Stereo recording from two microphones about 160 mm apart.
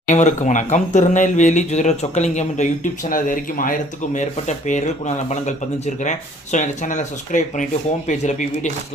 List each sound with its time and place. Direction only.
0.1 s speech: 50° left (ahead or behind)
3.1 s speech: 60° left (ahead or behind)